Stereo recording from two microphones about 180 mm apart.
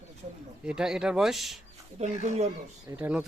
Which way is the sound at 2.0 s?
40° right (ahead or behind).